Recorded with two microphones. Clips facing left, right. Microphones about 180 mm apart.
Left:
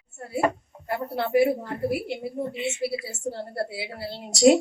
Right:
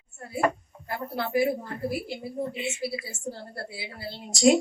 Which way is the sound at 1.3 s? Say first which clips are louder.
Left 4 dB; 70° left (ahead or behind).